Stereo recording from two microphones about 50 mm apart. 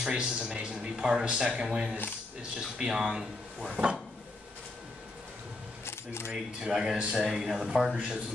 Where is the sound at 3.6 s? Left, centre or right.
Centre.